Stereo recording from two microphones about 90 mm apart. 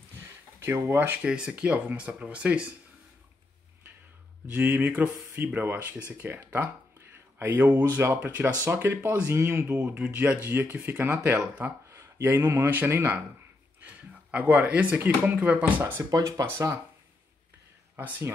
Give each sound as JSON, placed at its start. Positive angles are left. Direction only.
{"t": 0.8, "sound": "speech", "side_deg": -25}
{"t": 1.2, "sound": "speech", "side_deg": -10}
{"t": 4.6, "sound": "speech", "side_deg": -20}
{"t": 9.7, "sound": "speech", "side_deg": -15}
{"t": 11.9, "sound": "speech", "side_deg": -30}
{"t": 16.0, "sound": "speech", "side_deg": -40}
{"t": 17.9, "sound": "speech", "side_deg": -25}